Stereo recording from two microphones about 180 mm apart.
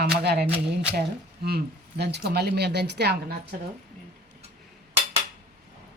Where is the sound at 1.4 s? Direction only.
65° right (ahead or behind).